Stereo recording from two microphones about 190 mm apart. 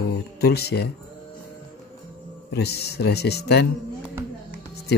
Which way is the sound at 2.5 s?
60° left (ahead or behind).